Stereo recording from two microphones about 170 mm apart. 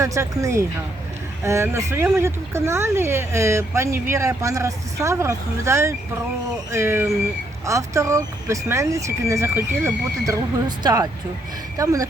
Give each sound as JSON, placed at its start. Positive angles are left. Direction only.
{"t": 0.0, "sound": "speech", "side_deg": -20}